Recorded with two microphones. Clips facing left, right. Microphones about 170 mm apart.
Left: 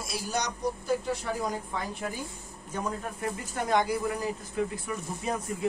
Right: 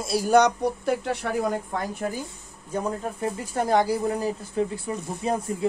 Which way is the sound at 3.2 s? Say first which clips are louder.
Right 6 dB; 35° right (ahead or behind).